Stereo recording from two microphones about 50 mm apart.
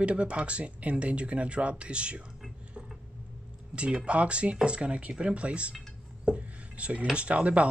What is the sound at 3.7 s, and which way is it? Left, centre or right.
Speech, right.